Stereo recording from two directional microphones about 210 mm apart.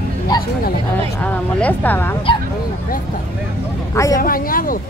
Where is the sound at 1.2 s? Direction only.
5° left (ahead or behind).